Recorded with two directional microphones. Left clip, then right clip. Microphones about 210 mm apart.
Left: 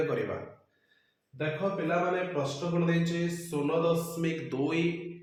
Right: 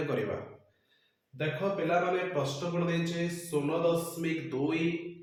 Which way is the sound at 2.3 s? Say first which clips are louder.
Even; 10° left (ahead or behind).